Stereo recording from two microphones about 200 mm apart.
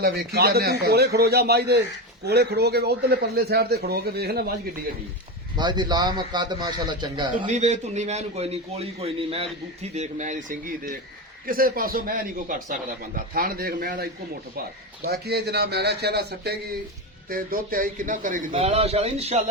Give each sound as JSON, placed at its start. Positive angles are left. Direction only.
{"t": 0.0, "sound": "a man's voice", "side_deg": -55}
{"t": 5.5, "sound": "a man's voice", "side_deg": -20}
{"t": 7.4, "sound": "a man's voice", "side_deg": -35}
{"t": 11.4, "sound": "a man's voice", "side_deg": -45}